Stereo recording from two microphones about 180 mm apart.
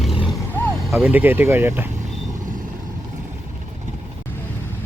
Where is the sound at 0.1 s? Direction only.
30° left (ahead or behind).